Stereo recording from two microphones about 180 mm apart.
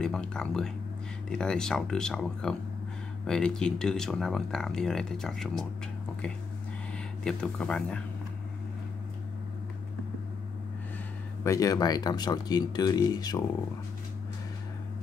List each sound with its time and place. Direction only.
0.0 s speech: 5° left (ahead or behind)
6.9 s speech: 5° left (ahead or behind)
11.4 s speech: 20° left (ahead or behind)